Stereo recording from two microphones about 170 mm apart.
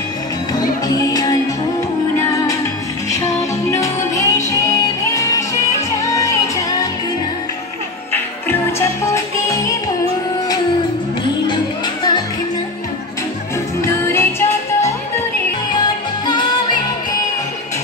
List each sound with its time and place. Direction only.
0.6 s music: 20° left (ahead or behind)
3.1 s music: 20° left (ahead or behind)
8.1 s music: 15° left (ahead or behind)
11.4 s music: 25° left (ahead or behind)
13.7 s music: 15° left (ahead or behind)
16.3 s music: 25° left (ahead or behind)